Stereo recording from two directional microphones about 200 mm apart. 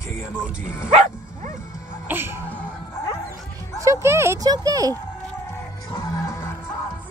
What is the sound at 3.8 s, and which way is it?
Speech, 15° right (ahead or behind).